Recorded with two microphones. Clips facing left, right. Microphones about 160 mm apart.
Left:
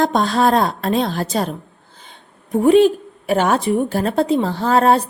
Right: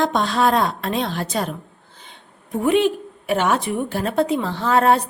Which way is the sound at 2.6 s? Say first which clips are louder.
Left 6 dB; 35° left (ahead or behind).